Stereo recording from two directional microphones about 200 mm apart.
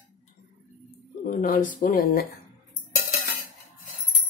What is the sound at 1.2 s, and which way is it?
Speech, 40° left (ahead or behind).